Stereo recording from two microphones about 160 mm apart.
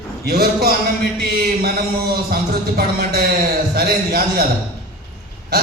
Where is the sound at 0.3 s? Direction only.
75° right (ahead or behind).